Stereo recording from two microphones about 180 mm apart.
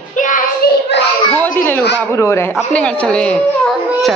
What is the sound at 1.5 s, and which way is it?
A child's voice, 10° left (ahead or behind).